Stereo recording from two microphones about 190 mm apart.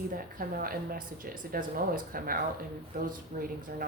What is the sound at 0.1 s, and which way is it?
Speech, 50° right (ahead or behind).